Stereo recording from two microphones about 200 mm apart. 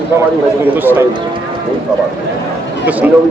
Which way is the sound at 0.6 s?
10° right (ahead or behind).